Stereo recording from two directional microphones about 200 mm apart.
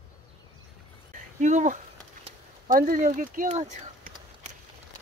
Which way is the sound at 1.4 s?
40° right (ahead or behind).